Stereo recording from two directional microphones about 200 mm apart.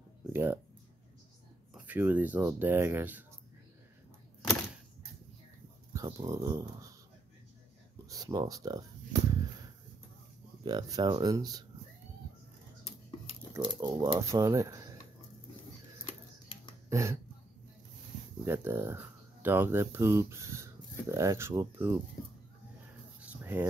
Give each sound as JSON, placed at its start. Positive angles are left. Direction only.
{"t": 0.3, "sound": "a sound", "side_deg": -10}
{"t": 1.7, "sound": "speech", "side_deg": -10}
{"t": 5.9, "sound": "speech", "side_deg": -15}
{"t": 8.1, "sound": "speech", "side_deg": -20}
{"t": 10.6, "sound": "speech", "side_deg": -20}
{"t": 13.5, "sound": "speech", "side_deg": -20}
{"t": 16.9, "sound": "speech", "side_deg": -15}
{"t": 18.4, "sound": "speech", "side_deg": -10}
{"t": 23.2, "sound": "a sound", "side_deg": -10}